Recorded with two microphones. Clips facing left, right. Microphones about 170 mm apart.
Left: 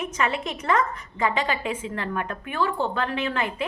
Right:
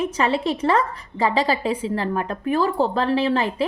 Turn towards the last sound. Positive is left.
turn(degrees=-35)  # may be behind; listen again after turning